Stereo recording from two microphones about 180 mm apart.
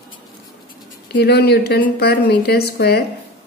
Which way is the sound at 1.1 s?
65° left (ahead or behind).